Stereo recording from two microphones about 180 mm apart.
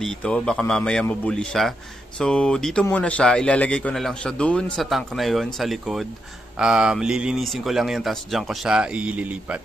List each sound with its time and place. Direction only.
0.0 s a man's voice: 5° left (ahead or behind)